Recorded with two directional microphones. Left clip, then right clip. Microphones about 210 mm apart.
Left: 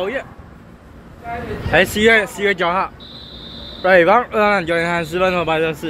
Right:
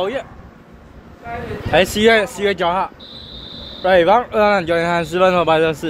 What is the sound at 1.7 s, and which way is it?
Speech, 15° right (ahead or behind).